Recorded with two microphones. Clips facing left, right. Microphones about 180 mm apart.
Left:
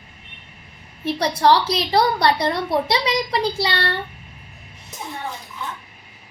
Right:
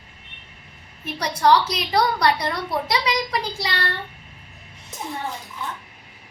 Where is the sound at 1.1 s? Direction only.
30° left (ahead or behind).